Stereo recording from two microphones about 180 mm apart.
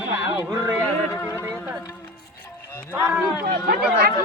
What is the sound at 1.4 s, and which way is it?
Music, 10° right (ahead or behind).